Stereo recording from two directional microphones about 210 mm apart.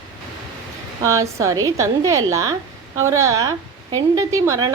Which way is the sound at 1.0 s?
15° right (ahead or behind).